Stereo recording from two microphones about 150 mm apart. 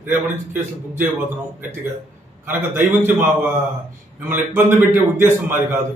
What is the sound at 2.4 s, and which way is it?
Speech, 15° right (ahead or behind).